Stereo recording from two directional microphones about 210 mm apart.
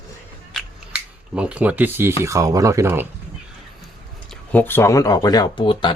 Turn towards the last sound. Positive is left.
turn(degrees=25)  # may be behind; listen again after turning